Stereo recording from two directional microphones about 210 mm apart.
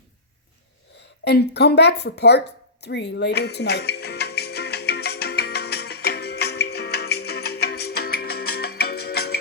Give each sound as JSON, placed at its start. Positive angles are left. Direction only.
{"t": 1.2, "sound": "speech", "side_deg": 50}
{"t": 2.8, "sound": "music", "side_deg": 55}